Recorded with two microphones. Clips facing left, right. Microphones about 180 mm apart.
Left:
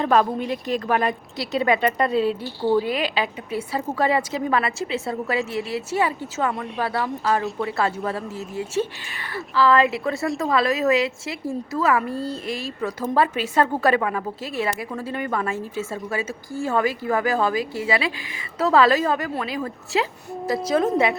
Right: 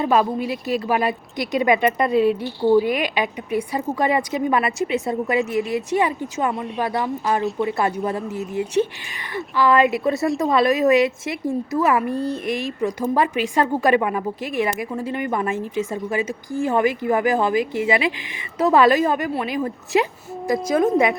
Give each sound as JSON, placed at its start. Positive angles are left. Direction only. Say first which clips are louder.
{"t": 0.0, "sound": "a woman's voice", "louder": "right 1 dB", "side_deg": -5}
{"t": 6.5, "sound": "speech", "louder": "right 2 dB", "side_deg": 0}
{"t": 6.8, "sound": "speech", "louder": "right 1 dB", "side_deg": -15}
{"t": 9.3, "sound": "a woman's voice", "louder": "right 1 dB", "side_deg": -15}